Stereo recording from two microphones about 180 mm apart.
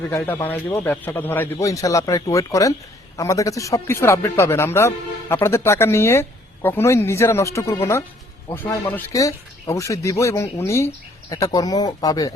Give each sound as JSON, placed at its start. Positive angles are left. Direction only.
{"t": 0.3, "sound": "speech", "side_deg": 10}